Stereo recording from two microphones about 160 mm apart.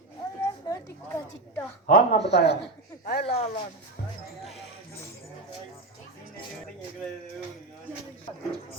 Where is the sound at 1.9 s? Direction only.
90° left.